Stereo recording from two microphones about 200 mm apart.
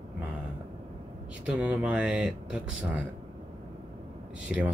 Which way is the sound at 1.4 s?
5° right (ahead or behind).